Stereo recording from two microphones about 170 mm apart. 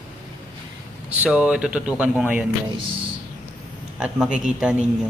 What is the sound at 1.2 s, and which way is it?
Speech, 5° right (ahead or behind).